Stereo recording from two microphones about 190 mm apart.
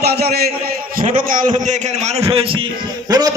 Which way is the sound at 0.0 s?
55° right (ahead or behind).